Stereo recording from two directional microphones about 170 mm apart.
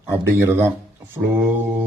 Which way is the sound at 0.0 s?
15° right (ahead or behind).